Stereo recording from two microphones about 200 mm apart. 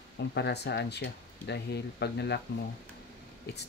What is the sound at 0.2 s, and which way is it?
Speech, 55° left (ahead or behind).